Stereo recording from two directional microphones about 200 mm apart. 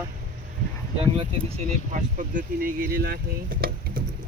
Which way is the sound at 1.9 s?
40° right (ahead or behind).